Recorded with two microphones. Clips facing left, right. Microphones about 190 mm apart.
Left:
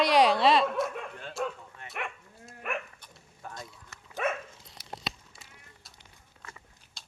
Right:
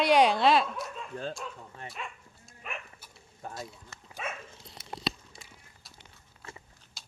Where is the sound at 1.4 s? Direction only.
65° left (ahead or behind).